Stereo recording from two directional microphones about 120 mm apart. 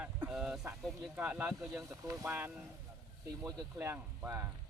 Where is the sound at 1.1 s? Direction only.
10° right (ahead or behind).